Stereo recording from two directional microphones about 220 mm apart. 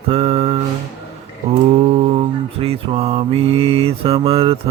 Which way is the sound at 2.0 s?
25° right (ahead or behind).